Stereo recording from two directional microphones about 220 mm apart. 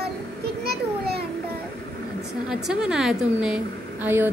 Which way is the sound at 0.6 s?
45° right (ahead or behind).